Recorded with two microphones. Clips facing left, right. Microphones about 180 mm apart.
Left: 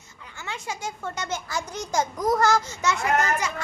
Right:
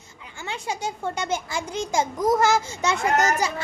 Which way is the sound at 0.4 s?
30° right (ahead or behind).